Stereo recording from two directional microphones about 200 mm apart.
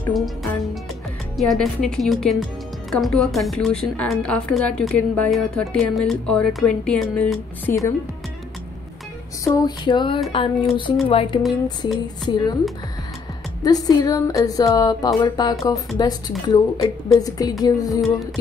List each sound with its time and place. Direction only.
0.0 s a woman's voice: centre (ahead or behind)
9.4 s a woman's voice: 15° left (ahead or behind)
13.6 s a woman's voice: 20° left (ahead or behind)